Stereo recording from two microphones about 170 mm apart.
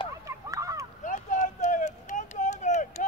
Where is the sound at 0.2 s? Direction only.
20° right (ahead or behind).